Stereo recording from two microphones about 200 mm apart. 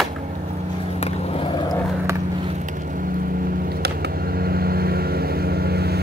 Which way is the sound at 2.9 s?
45° right (ahead or behind).